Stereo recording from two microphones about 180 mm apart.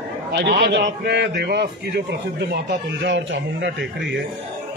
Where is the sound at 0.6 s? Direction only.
70° right (ahead or behind).